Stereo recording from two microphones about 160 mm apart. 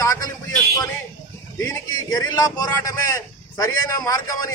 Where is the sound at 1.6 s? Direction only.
20° left (ahead or behind).